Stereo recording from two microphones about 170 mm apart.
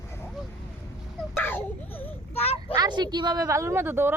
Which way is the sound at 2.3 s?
35° left (ahead or behind).